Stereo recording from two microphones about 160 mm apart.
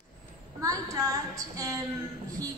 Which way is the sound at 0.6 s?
20° right (ahead or behind).